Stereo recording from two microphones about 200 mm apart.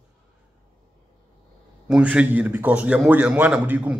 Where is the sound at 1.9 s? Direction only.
5° right (ahead or behind).